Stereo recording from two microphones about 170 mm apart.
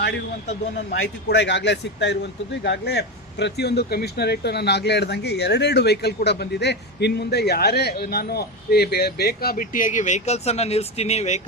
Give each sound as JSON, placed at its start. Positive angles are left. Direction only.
{"t": 0.9, "sound": "speech", "side_deg": 90}